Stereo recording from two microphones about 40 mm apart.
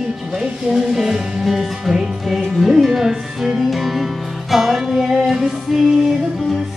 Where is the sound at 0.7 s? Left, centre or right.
Centre.